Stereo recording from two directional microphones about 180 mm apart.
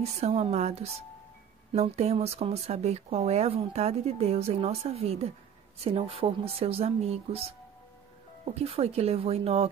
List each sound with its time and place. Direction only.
0.2 s speech: 35° right (ahead or behind)